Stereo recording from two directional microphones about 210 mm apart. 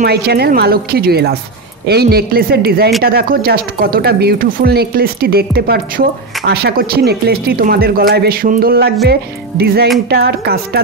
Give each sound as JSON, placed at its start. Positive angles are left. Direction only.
{"t": 0.0, "sound": "speech", "side_deg": -50}